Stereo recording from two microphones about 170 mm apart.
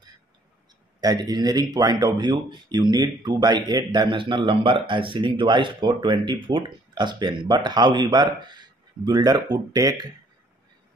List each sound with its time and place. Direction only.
1.0 s speech: 25° right (ahead or behind)